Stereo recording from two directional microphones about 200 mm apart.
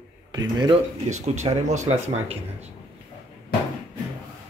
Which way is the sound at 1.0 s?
35° right (ahead or behind).